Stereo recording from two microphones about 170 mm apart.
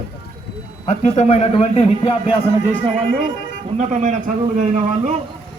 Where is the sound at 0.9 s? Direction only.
40° left (ahead or behind).